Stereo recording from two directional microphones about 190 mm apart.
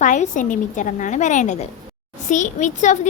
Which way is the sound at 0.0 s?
45° left (ahead or behind).